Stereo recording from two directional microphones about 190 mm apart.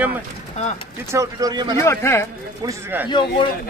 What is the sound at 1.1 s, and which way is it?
Speech, 20° right (ahead or behind).